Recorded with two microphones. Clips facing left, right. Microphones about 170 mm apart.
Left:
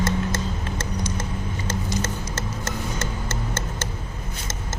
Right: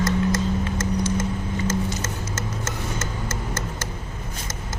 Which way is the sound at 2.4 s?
30° left (ahead or behind).